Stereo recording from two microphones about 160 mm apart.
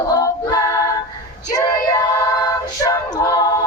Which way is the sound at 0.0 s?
20° left (ahead or behind).